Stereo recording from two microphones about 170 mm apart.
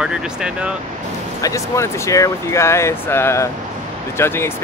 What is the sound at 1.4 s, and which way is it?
Speech, 20° left (ahead or behind).